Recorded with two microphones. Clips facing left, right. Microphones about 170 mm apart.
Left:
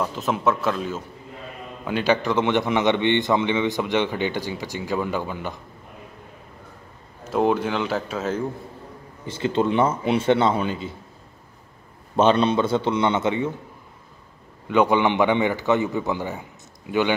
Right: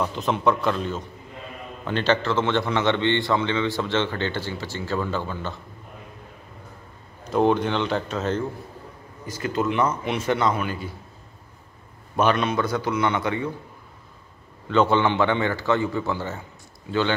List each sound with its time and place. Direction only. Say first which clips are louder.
0.0 s a man's voice: even; centre (ahead or behind)
7.2 s a man's voice: right 1 dB; 5° left (ahead or behind)
9.2 s a man's voice: left 3 dB; 25° left (ahead or behind)
12.2 s a man's voice: left 4 dB; 30° left (ahead or behind)
14.7 s a man's voice: left 1 dB; 15° left (ahead or behind)